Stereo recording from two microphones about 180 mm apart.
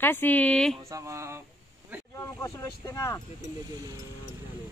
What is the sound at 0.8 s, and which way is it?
Speech, 15° right (ahead or behind).